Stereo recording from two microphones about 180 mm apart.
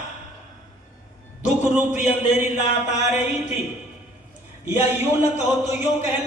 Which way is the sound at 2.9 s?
40° left (ahead or behind).